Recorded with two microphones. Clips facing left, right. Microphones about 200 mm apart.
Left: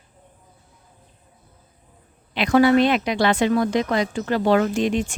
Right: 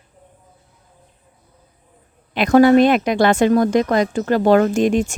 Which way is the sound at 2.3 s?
45° right (ahead or behind).